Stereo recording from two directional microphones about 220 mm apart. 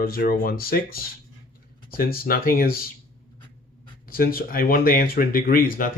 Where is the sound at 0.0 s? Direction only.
40° left (ahead or behind).